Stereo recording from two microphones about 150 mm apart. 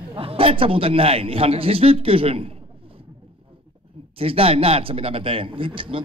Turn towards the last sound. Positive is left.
turn(degrees=-35)  # may be behind; listen again after turning